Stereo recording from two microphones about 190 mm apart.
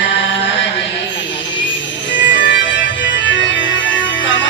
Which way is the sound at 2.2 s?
45° left (ahead or behind).